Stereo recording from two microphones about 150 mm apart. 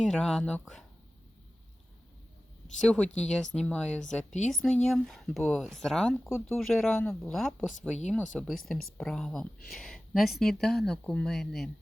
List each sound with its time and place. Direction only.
0.0 s a woman's voice: 5° left (ahead or behind)
2.8 s a woman's voice: 5° left (ahead or behind)
6.2 s speech: 15° left (ahead or behind)
6.6 s a woman's voice: 5° left (ahead or behind)